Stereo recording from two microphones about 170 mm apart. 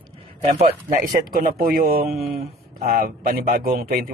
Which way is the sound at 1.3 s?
55° right (ahead or behind).